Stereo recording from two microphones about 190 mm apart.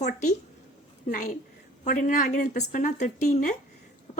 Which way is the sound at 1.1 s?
40° left (ahead or behind).